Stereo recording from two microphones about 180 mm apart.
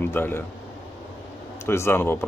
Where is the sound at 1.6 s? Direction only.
15° left (ahead or behind).